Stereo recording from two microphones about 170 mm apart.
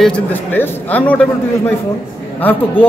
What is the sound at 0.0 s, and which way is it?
A man's voice, 10° left (ahead or behind).